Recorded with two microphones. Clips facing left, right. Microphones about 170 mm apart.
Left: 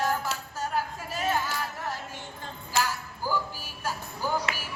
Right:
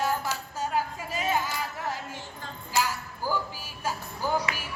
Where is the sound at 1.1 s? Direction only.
10° right (ahead or behind).